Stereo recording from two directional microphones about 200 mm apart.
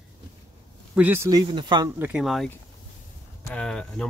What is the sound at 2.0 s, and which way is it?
Speech, centre (ahead or behind).